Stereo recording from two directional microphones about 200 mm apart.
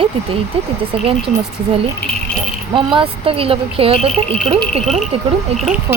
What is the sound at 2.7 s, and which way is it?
Speech, 25° right (ahead or behind).